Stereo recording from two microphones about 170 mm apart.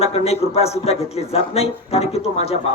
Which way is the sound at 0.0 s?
35° left (ahead or behind).